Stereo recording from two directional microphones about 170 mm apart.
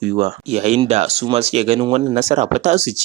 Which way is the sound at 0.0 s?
35° right (ahead or behind).